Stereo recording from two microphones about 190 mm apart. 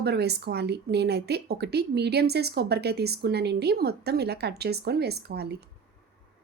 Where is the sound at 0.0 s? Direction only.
60° right (ahead or behind).